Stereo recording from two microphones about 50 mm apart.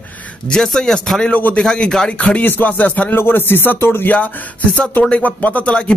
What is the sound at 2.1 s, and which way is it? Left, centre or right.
Speech, left.